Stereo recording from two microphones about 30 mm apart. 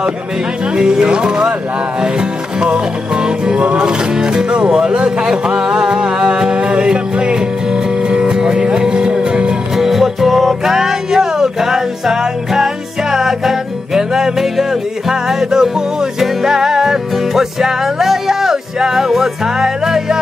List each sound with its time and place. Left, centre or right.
0.7 s speech: right
2.6 s speech: right
6.6 s music: right
9.8 s music: centre
13.9 s music: centre